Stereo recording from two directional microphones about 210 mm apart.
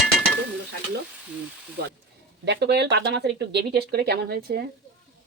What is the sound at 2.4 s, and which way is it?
Speech, 55° right (ahead or behind).